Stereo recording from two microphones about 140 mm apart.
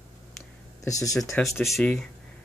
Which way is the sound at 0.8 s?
25° left (ahead or behind).